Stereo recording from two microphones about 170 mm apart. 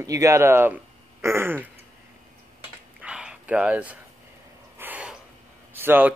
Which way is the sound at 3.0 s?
5° right (ahead or behind).